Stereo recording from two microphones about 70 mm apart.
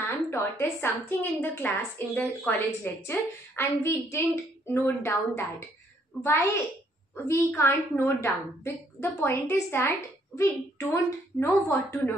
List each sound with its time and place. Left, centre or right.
0.0 s a woman's voice: left